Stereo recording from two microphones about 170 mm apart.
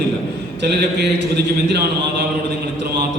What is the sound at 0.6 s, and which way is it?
A man's voice, 80° right.